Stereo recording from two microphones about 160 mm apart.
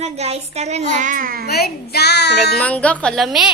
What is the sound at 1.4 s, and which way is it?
Speech, 85° left.